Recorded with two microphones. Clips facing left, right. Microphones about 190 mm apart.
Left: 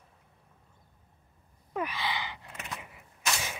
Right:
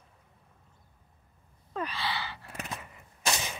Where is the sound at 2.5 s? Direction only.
30° right (ahead or behind).